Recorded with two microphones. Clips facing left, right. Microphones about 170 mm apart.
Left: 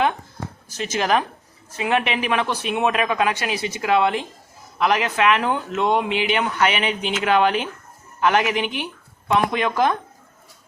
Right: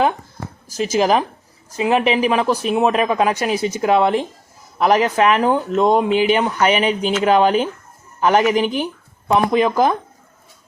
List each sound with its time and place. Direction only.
0.7 s speech: 35° right (ahead or behind)